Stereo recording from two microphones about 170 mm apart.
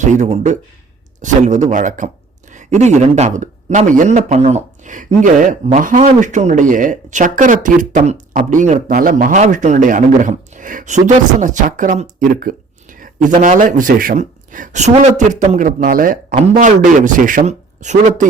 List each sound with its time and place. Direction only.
0.0 s speech: 45° right (ahead or behind)